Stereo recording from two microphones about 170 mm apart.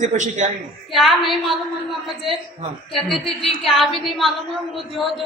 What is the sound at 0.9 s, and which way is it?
Speech, centre (ahead or behind).